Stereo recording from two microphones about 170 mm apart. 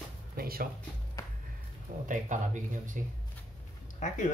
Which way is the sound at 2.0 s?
45° right (ahead or behind).